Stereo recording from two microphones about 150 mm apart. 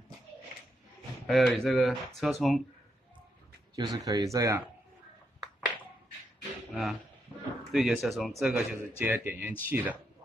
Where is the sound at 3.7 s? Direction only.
25° right (ahead or behind).